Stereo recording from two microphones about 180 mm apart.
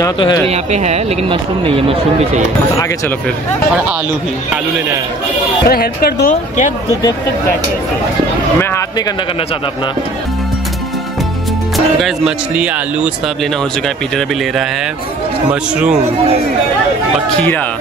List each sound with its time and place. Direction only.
0.0 s speech: 20° left (ahead or behind)
0.5 s speech: 40° right (ahead or behind)
5.7 s speech: 60° left (ahead or behind)
7.0 s speech: 20° left (ahead or behind)
8.5 s a sound: 15° left (ahead or behind)
12.0 s a man's voice: 5° right (ahead or behind)